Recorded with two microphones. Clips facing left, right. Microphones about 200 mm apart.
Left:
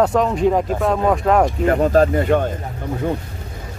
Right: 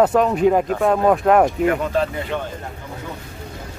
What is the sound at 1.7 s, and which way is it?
Speech, 40° left (ahead or behind).